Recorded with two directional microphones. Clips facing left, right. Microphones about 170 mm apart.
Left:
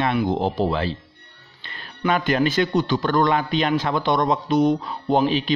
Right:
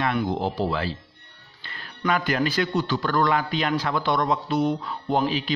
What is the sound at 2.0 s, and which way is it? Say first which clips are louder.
A man's voice: left 3 dB; 25° left (ahead or behind).